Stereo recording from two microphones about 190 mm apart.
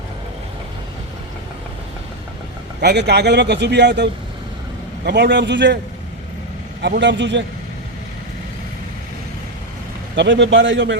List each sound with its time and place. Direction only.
2.8 s a man's voice: 60° right (ahead or behind)
6.8 s a man's voice: 65° right (ahead or behind)
10.2 s a man's voice: 70° right (ahead or behind)